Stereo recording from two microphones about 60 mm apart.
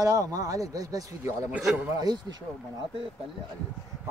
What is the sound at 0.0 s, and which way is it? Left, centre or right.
A man's voice, right.